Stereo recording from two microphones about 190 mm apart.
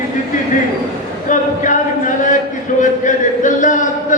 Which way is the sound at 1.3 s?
45° left (ahead or behind).